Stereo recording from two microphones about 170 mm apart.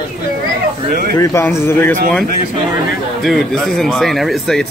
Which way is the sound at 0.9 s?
55° right (ahead or behind).